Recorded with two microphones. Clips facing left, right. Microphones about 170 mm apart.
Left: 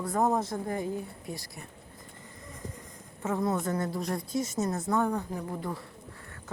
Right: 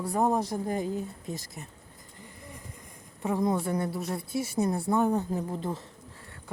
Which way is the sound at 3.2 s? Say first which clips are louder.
Right 2 dB; 15° right (ahead or behind).